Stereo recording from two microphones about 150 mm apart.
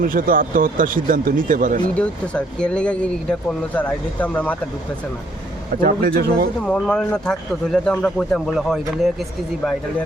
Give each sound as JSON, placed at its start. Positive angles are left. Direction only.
{"t": 0.0, "sound": "speech", "side_deg": -70}
{"t": 2.0, "sound": "speech", "side_deg": 5}
{"t": 5.8, "sound": "speech", "side_deg": -75}
{"t": 6.6, "sound": "a man's voice", "side_deg": 5}